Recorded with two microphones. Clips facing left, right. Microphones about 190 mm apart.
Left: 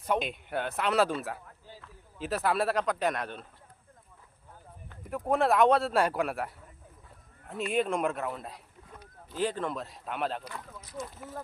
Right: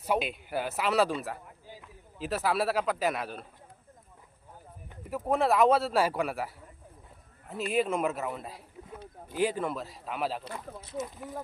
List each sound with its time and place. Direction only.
0.0 s speech: 5° right (ahead or behind)
1.5 s a sound: 15° right (ahead or behind)
2.1 s speech: centre (ahead or behind)
4.9 s speech: 5° right (ahead or behind)
7.7 s speech: 5° right (ahead or behind)
10.4 s speech: 30° right (ahead or behind)